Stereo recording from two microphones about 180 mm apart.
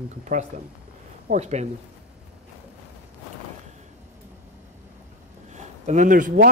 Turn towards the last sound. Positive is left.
turn(degrees=-50)  # may be behind; listen again after turning